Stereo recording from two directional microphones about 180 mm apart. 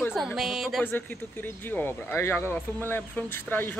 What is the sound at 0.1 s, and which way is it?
Speech, centre (ahead or behind).